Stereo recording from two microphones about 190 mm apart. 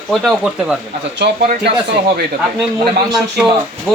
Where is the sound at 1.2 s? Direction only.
55° right (ahead or behind).